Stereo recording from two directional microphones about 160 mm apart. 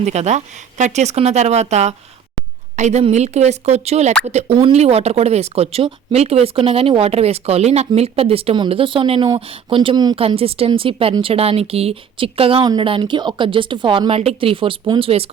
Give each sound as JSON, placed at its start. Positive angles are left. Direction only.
{"t": 0.0, "sound": "speech", "side_deg": -45}
{"t": 10.2, "sound": "speech", "side_deg": -35}